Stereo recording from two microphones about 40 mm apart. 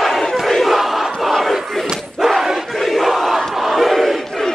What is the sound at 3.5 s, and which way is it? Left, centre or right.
Crowd, centre.